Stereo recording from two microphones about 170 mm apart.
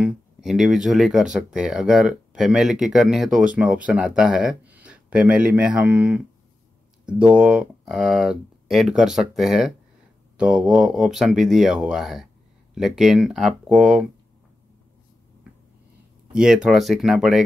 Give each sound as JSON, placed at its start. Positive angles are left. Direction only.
{"t": 0.0, "sound": "speech", "side_deg": 0}
{"t": 16.3, "sound": "speech", "side_deg": -5}